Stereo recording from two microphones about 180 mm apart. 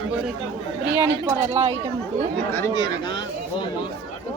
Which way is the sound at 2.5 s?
20° left (ahead or behind).